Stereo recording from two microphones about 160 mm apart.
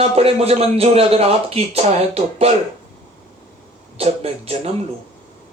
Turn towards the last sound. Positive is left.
turn(degrees=-40)  # may be behind; listen again after turning